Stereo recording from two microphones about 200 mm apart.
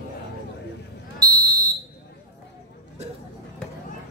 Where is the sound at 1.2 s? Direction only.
20° right (ahead or behind).